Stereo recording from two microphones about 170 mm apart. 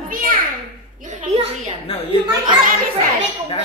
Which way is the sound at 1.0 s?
45° right (ahead or behind).